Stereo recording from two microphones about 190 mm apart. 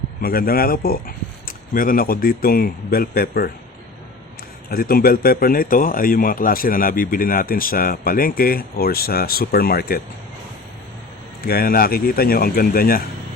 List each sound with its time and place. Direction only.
0.2 s speech: 50° left (ahead or behind)
4.7 s speech: 50° left (ahead or behind)
11.4 s speech: 50° left (ahead or behind)